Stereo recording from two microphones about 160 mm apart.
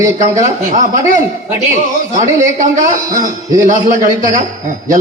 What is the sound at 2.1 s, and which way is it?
A man's voice, 50° right (ahead or behind).